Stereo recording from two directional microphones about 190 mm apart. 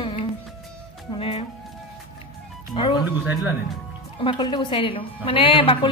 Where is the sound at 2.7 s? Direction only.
25° left (ahead or behind).